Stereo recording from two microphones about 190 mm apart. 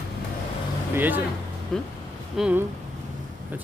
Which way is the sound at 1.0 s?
10° right (ahead or behind).